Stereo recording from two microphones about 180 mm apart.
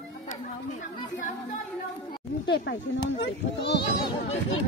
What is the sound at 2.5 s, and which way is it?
Speech, 75° left (ahead or behind).